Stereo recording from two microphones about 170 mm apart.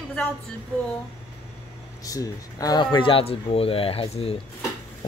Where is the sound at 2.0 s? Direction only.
20° left (ahead or behind).